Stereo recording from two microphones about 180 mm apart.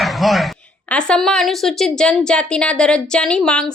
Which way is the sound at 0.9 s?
5° left (ahead or behind).